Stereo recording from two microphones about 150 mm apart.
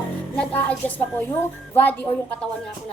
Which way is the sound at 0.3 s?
10° left (ahead or behind).